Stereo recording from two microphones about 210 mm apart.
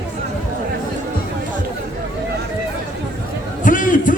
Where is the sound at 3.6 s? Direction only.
40° left (ahead or behind).